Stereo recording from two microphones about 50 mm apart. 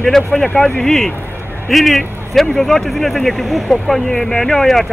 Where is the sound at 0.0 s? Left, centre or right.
Centre.